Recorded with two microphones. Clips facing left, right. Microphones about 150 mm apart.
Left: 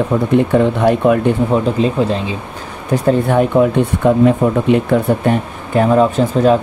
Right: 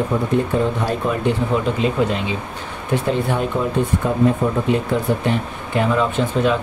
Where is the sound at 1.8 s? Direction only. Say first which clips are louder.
Left 4 dB; 35° left (ahead or behind).